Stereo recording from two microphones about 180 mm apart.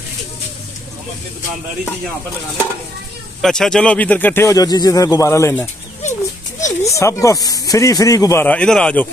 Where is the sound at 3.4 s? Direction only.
5° left (ahead or behind).